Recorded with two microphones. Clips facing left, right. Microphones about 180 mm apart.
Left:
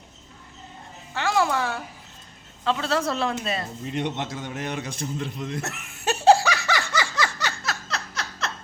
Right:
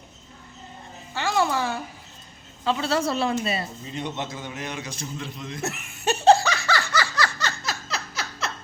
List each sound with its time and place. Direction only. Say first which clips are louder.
1.1 s speech: left 1 dB; centre (ahead or behind)
3.9 s a man's voice: left 3 dB; 70° left (ahead or behind)
5.6 s laughter: right 2 dB; centre (ahead or behind); by 7.5 s 20° left (ahead or behind)
7.6 s laughter: even; centre (ahead or behind)